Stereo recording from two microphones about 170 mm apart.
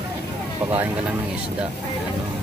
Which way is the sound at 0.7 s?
10° right (ahead or behind).